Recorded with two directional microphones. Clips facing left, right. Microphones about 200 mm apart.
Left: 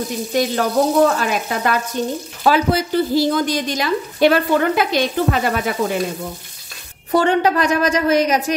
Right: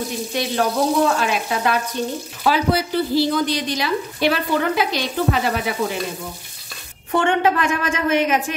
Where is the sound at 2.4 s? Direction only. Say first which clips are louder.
Left 2 dB; 45° left (ahead or behind).